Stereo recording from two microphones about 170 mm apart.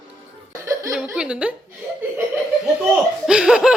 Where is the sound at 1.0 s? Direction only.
5° right (ahead or behind).